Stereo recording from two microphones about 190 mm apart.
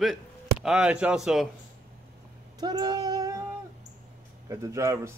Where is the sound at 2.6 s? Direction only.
20° right (ahead or behind).